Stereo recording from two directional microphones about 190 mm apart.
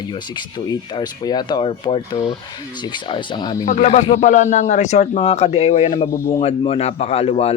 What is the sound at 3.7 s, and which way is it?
Speech, 40° left (ahead or behind).